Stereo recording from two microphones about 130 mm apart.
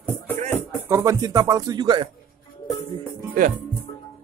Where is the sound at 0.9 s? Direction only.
25° right (ahead or behind).